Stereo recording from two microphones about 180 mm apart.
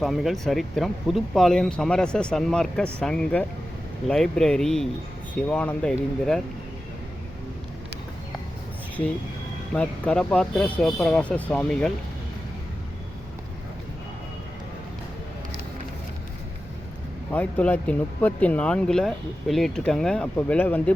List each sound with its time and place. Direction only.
0.0 s speech: centre (ahead or behind)
9.7 s speech: 5° left (ahead or behind)
17.3 s speech: 10° left (ahead or behind)